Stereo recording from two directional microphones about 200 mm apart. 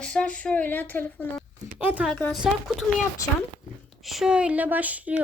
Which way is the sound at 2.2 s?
5° left (ahead or behind).